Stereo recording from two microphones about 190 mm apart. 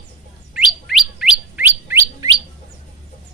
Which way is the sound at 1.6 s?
10° right (ahead or behind).